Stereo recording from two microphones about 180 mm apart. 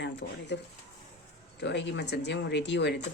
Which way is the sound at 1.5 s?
70° left (ahead or behind).